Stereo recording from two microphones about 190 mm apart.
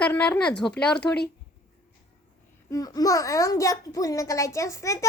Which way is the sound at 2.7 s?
20° left (ahead or behind).